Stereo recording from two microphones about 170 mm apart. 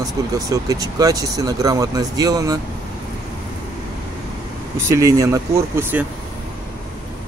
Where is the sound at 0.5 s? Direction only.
20° right (ahead or behind).